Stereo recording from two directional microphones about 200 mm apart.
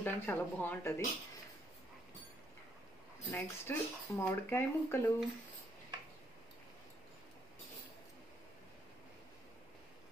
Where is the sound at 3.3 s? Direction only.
10° left (ahead or behind).